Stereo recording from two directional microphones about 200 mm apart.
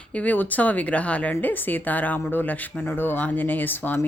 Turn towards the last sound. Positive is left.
turn(degrees=10)  # may be behind; listen again after turning